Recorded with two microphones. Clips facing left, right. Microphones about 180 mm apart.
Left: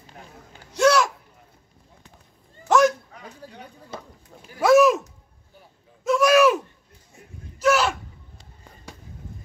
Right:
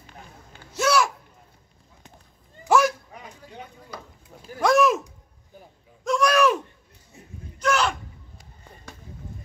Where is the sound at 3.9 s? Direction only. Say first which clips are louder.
Left 3 dB; 25° left (ahead or behind).